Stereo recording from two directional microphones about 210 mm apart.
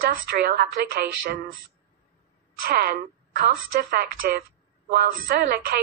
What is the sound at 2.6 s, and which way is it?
A woman's voice, 45° right (ahead or behind).